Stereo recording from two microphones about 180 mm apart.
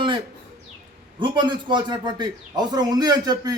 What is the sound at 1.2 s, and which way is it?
A man's voice, 25° right (ahead or behind).